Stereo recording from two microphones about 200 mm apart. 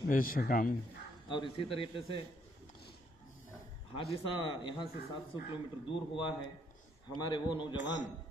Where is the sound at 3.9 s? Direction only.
25° left (ahead or behind).